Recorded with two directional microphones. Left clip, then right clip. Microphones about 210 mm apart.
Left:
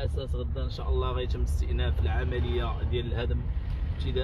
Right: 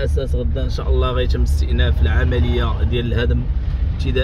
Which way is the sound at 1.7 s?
15° right (ahead or behind).